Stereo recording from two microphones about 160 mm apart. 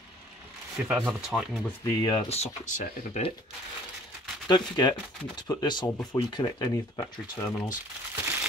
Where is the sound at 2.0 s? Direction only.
35° left (ahead or behind).